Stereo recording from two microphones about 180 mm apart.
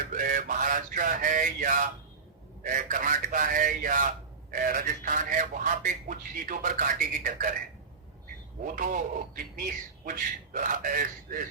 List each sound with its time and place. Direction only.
0.1 s a sound: 50° right (ahead or behind)
2.6 s a man's voice: 45° right (ahead or behind)
8.7 s a man's voice: 50° right (ahead or behind)